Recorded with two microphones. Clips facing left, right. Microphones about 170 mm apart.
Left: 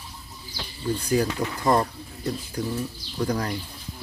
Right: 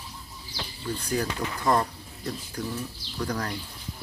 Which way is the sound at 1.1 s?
10° left (ahead or behind).